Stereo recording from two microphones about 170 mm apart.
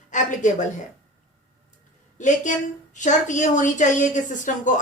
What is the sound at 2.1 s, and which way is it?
A woman's voice, 45° left (ahead or behind).